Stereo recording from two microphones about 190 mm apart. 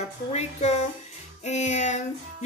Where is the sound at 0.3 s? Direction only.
35° left (ahead or behind).